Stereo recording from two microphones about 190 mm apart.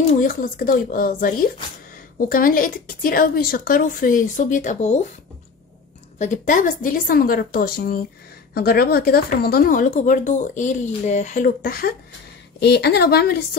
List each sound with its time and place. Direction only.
0.1 s speech: 45° left (ahead or behind)
6.1 s speech: 40° left (ahead or behind)
12.5 s a woman's voice: 60° left (ahead or behind)